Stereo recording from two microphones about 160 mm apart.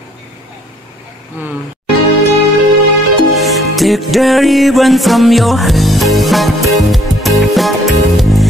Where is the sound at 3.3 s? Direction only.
Centre (ahead or behind).